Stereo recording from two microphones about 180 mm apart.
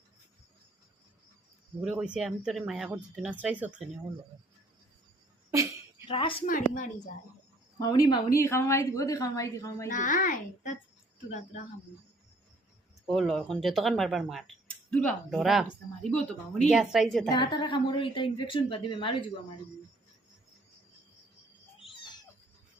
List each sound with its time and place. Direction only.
1.8 s speech: 5° right (ahead or behind)
6.1 s speech: 30° left (ahead or behind)
6.4 s a child's voice: 45° left (ahead or behind)
7.8 s a woman's voice: 20° left (ahead or behind)
9.9 s a child's voice: 45° left (ahead or behind)
13.1 s speech: centre (ahead or behind)
16.6 s speech: 5° right (ahead or behind)
17.2 s speech: 25° left (ahead or behind)
21.8 s a sound: 25° left (ahead or behind)